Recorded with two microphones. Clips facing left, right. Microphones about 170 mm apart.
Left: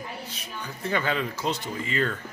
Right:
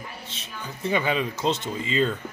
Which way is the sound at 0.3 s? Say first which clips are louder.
Even; 20° right (ahead or behind).